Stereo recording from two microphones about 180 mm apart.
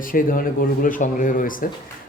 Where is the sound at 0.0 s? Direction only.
50° left (ahead or behind).